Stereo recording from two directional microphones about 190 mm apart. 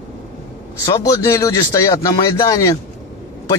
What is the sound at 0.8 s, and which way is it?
Speech, 15° left (ahead or behind).